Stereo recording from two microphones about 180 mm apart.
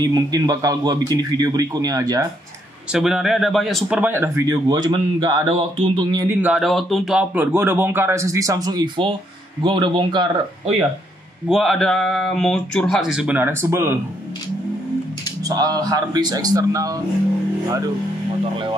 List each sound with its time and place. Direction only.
0.0 s a man's voice: 20° right (ahead or behind)
2.9 s speech: 5° right (ahead or behind); by 6.3 s 25° right (ahead or behind)
6.4 s a man's voice: centre (ahead or behind); by 10.8 s 30° right (ahead or behind)
11.4 s speech: centre (ahead or behind)
15.4 s a man's voice: 20° right (ahead or behind)